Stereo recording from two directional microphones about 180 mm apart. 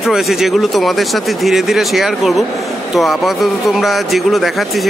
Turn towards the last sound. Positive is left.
turn(degrees=0)  # may be behind; listen again after turning